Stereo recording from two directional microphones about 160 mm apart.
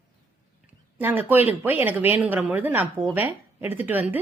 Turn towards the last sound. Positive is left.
turn(degrees=-10)  # may be behind; listen again after turning